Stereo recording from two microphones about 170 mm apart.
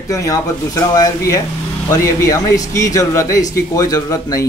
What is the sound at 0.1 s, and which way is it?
Speech, 20° left (ahead or behind).